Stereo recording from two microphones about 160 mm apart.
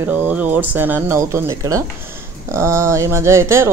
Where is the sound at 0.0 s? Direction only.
10° right (ahead or behind).